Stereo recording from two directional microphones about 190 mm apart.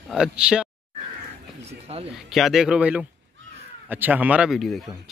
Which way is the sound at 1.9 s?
30° right (ahead or behind).